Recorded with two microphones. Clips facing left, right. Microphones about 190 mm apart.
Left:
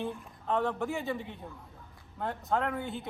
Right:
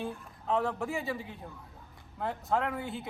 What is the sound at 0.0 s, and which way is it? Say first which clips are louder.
A man's voice: left 1 dB; centre (ahead or behind).